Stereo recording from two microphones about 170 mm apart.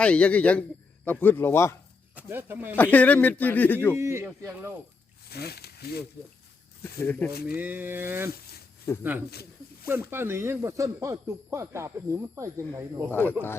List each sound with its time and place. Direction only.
0.0 s speech: 10° left (ahead or behind)
2.1 s speech: 10° right (ahead or behind)
2.7 s speech: 10° left (ahead or behind)
3.9 s speech: 15° right (ahead or behind)
5.3 s speech: 70° left (ahead or behind)
7.0 s speech: 10° left (ahead or behind)
7.3 s speech: 65° left (ahead or behind)
7.5 s speech: 10° right (ahead or behind)
9.8 s speech: 15° right (ahead or behind)
13.1 s speech: 10° left (ahead or behind)